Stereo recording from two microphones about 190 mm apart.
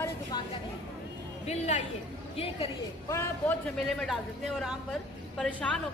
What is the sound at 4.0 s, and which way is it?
Speech, centre (ahead or behind).